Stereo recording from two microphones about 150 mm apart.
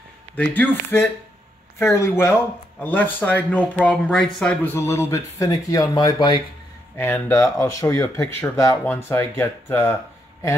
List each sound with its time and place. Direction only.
0.4 s speech: 10° left (ahead or behind)
4.7 s speech: 15° left (ahead or behind)
7.0 s speech: 15° left (ahead or behind)